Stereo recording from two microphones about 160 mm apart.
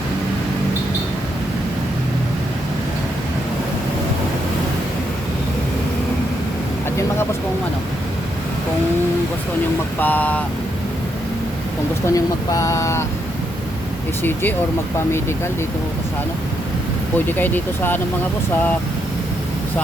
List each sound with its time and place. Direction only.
10.0 s speech: 10° left (ahead or behind)
12.0 s speech: 20° left (ahead or behind)
14.2 s speech: 10° left (ahead or behind)
17.2 s speech: 10° left (ahead or behind)